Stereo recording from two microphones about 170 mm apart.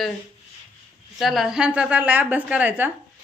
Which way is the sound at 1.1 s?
Centre (ahead or behind).